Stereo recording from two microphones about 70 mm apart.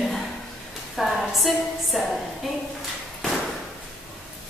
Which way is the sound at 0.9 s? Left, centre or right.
Centre.